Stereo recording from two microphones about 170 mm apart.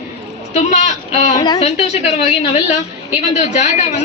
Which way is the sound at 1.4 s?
25° left (ahead or behind).